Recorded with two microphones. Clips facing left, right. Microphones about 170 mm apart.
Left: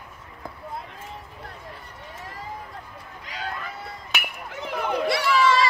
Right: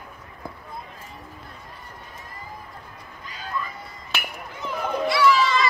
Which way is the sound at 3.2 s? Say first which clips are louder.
Right 2 dB; 70° left (ahead or behind).